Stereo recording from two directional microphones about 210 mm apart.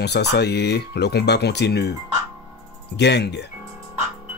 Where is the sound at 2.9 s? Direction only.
55° left (ahead or behind).